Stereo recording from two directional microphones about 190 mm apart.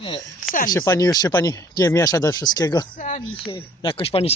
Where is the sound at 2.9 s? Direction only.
40° left (ahead or behind).